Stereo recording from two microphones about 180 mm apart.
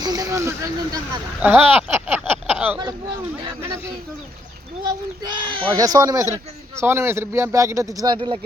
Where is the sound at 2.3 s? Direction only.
10° right (ahead or behind).